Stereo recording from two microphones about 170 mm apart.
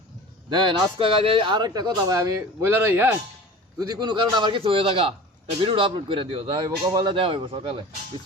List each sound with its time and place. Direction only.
0.5 s speech: 30° right (ahead or behind); by 3.2 s 10° right (ahead or behind)
3.8 s a man's voice: 25° right (ahead or behind)